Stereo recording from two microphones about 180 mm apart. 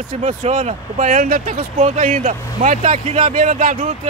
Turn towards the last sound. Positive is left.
turn(degrees=-45)  # may be behind; listen again after turning